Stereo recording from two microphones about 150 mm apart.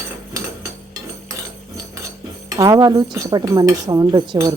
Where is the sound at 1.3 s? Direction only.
20° right (ahead or behind).